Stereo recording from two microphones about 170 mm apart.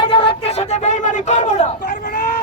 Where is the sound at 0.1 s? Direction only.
30° left (ahead or behind).